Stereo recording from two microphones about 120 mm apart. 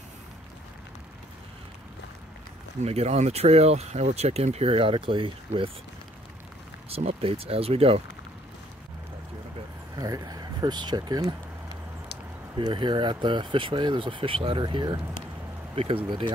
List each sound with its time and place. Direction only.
2.8 s speech: 65° right (ahead or behind); by 5.7 s 45° right (ahead or behind)
6.9 s speech: 55° right (ahead or behind)
9.9 s speech: 30° right (ahead or behind)
12.5 s speech: 40° right (ahead or behind)
15.7 s speech: 50° right (ahead or behind)